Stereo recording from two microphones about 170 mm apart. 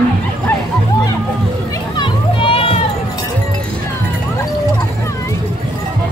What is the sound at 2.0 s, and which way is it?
Music, 30° left (ahead or behind).